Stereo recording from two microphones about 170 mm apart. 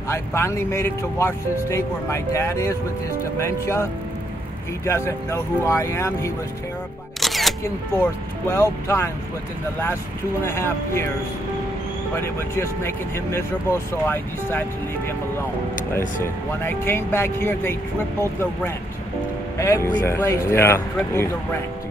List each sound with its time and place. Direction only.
0.1 s speech: 15° left (ahead or behind)
4.8 s speech: 15° left (ahead or behind)
7.2 s single-lens reflex camera: centre (ahead or behind)
7.6 s speech: 15° left (ahead or behind)
10.4 s speech: 15° left (ahead or behind)
12.2 s speech: 15° left (ahead or behind)
16.6 s speech: 15° left (ahead or behind)